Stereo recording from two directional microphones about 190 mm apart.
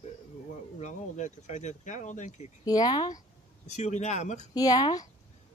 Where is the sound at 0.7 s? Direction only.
40° left (ahead or behind).